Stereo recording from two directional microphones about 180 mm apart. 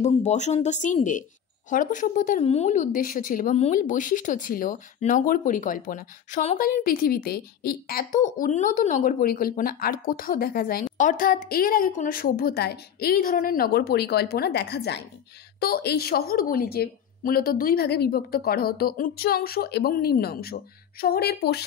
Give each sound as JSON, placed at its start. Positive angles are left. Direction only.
{"t": 0.0, "sound": "a woman's voice", "side_deg": 40}